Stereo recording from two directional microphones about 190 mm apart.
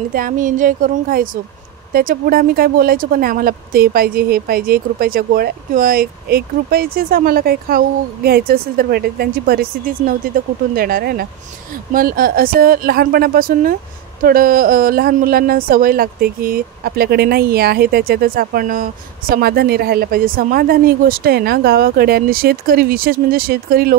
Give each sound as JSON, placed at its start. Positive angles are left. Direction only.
{"t": 0.1, "sound": "speech", "side_deg": -45}